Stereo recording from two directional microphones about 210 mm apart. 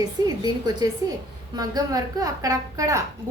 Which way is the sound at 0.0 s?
20° right (ahead or behind).